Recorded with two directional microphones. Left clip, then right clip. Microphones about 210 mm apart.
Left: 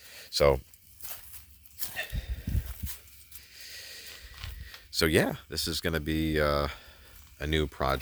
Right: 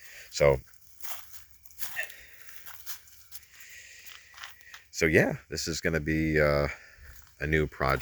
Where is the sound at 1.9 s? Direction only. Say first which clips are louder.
Right 1 dB; 35° left (ahead or behind).